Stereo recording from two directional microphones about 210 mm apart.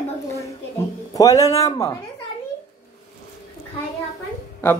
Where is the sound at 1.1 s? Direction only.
15° left (ahead or behind).